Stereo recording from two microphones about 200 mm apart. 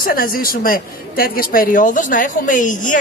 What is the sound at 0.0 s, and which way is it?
A woman's voice, 45° left (ahead or behind).